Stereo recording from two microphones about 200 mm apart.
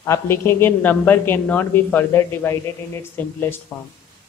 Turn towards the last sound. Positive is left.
turn(degrees=10)  # may be behind; listen again after turning